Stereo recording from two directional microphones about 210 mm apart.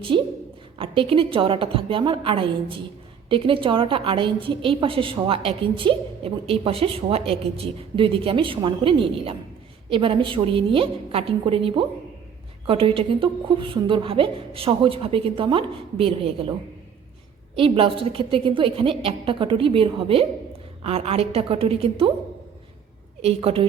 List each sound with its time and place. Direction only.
0.8 s a woman's voice: 25° right (ahead or behind)
17.6 s a woman's voice: 25° right (ahead or behind)
23.2 s a woman's voice: 25° right (ahead or behind)